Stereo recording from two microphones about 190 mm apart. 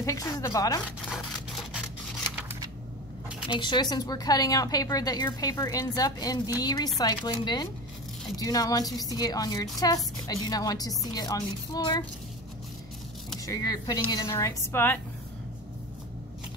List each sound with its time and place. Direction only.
0.0 s a woman's voice: 15° left (ahead or behind)
3.4 s a woman's voice: 25° left (ahead or behind)
13.5 s a woman's voice: 20° left (ahead or behind)